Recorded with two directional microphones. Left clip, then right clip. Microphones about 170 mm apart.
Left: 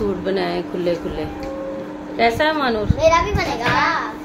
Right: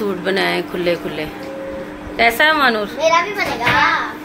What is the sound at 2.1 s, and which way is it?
Speech, 5° left (ahead or behind).